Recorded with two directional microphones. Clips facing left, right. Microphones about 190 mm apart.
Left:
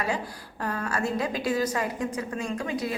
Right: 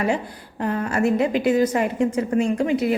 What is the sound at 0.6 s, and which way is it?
A woman's voice, 20° right (ahead or behind).